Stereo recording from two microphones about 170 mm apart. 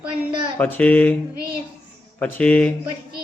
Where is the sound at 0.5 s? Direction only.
10° left (ahead or behind).